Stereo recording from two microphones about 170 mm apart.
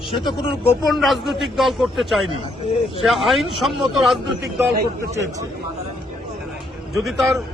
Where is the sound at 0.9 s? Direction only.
Centre (ahead or behind).